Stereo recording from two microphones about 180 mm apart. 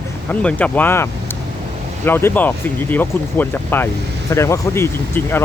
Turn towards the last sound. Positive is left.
turn(degrees=15)  # may be behind; listen again after turning